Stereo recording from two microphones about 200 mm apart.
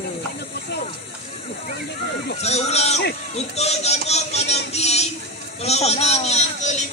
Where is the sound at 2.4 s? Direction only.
30° left (ahead or behind).